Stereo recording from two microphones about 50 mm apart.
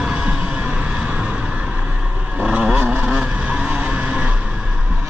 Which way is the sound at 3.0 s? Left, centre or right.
Right.